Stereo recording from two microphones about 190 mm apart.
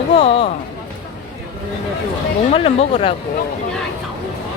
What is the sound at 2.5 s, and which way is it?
Speech, 30° left (ahead or behind).